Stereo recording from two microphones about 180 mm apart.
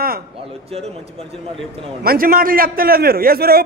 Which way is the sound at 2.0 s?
55° right (ahead or behind).